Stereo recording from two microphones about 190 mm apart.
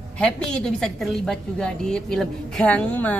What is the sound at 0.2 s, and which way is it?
A woman's voice, 5° left (ahead or behind).